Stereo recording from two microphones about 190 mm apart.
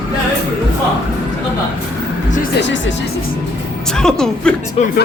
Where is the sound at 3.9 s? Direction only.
5° left (ahead or behind).